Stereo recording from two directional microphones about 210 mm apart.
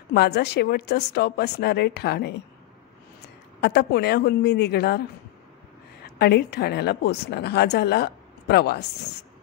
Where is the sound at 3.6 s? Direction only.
50° left (ahead or behind).